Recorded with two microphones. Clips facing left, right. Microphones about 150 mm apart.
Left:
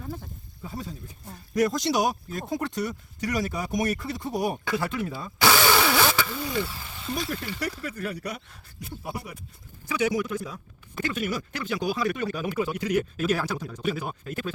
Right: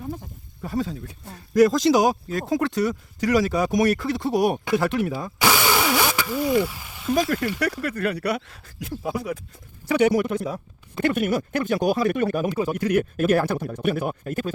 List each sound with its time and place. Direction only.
0.0 s a sound: 20° right (ahead or behind)
0.6 s speech: 85° right
5.4 s vehicle: 15° right (ahead or behind)
7.1 s speech: 90° right
7.6 s speech: 70° right (ahead or behind); by 9.4 s 90° right
9.9 s speech: 65° right (ahead or behind); by 14.5 s 45° right (ahead or behind)